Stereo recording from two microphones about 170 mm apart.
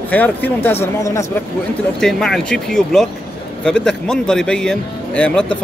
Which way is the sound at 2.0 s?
5° left (ahead or behind).